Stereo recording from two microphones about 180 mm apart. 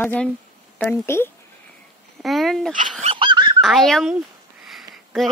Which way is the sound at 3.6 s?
Centre (ahead or behind).